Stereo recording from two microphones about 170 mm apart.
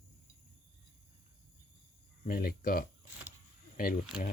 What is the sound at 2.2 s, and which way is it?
Speech, 60° left (ahead or behind).